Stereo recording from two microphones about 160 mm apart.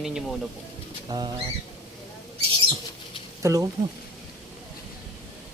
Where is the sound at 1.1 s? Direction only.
25° right (ahead or behind).